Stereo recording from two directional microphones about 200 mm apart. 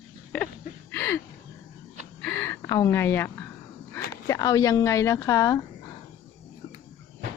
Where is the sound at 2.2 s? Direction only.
10° left (ahead or behind).